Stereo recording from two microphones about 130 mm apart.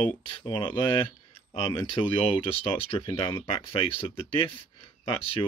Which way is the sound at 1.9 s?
45° left (ahead or behind).